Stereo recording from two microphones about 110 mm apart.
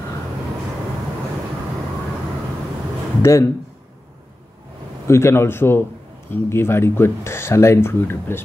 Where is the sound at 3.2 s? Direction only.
25° left (ahead or behind).